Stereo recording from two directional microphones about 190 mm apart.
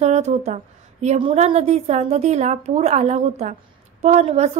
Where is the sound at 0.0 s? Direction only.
35° right (ahead or behind).